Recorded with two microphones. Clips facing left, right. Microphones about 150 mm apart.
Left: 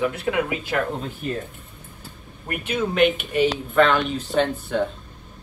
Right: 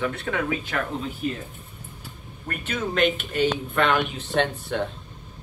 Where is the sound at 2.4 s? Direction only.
10° left (ahead or behind).